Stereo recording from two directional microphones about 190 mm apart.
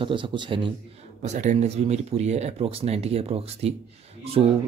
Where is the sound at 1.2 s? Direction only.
40° right (ahead or behind).